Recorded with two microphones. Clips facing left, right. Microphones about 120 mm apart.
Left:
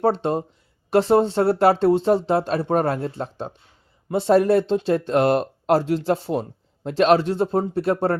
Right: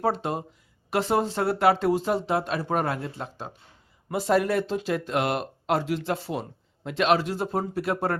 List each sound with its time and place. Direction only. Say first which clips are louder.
0.0 s speech: left 6 dB; 30° left (ahead or behind)
4.1 s speech: left 6 dB; 30° left (ahead or behind)